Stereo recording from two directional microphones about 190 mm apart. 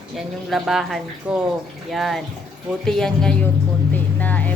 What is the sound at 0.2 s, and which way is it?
Speech, centre (ahead or behind).